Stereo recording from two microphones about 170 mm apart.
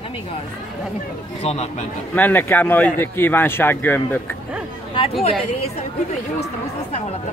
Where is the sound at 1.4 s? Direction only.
40° left (ahead or behind).